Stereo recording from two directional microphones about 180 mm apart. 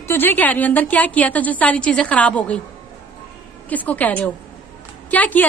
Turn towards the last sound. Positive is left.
turn(degrees=10)  # may be behind; listen again after turning